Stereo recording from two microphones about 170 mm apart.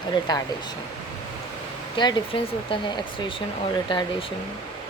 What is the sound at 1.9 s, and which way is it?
Speech, 30° left (ahead or behind).